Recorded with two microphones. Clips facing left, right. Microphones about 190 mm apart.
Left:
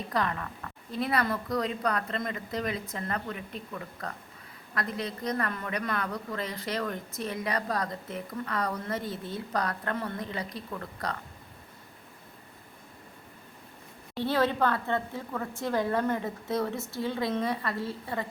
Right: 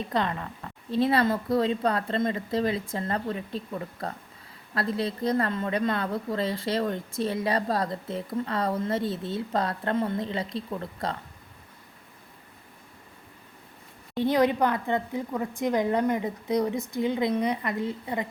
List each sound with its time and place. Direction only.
0.1 s a woman's voice: 25° right (ahead or behind)
14.2 s a woman's voice: 15° right (ahead or behind)